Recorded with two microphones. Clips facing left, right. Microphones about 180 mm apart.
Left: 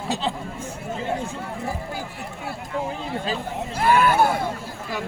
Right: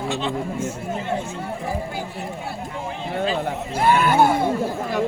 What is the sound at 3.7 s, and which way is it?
Speech, 25° right (ahead or behind).